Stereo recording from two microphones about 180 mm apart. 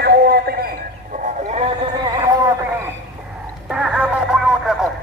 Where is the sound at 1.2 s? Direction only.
35° right (ahead or behind).